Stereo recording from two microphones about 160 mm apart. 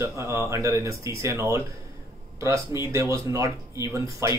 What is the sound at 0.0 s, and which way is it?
Speech, 20° right (ahead or behind).